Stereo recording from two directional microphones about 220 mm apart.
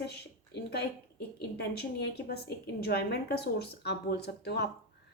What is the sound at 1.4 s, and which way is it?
A woman's voice, 45° left (ahead or behind).